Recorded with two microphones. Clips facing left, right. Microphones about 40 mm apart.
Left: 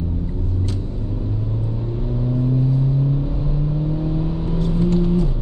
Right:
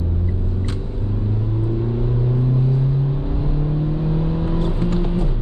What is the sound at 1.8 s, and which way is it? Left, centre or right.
Vehicle, right.